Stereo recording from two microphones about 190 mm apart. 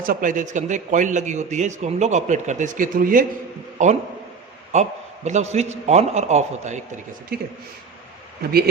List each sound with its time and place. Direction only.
0.0 s a man's voice: 45° right (ahead or behind)
8.4 s speech: 55° right (ahead or behind)